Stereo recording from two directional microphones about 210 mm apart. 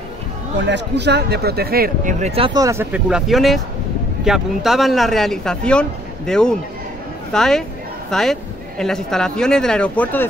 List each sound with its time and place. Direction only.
0.6 s speech: 55° right (ahead or behind); by 10.2 s 5° left (ahead or behind)